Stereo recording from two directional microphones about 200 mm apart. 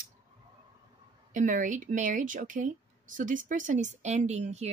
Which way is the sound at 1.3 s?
40° right (ahead or behind).